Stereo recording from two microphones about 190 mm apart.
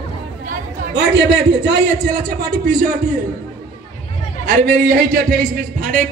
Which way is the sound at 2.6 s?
45° right (ahead or behind).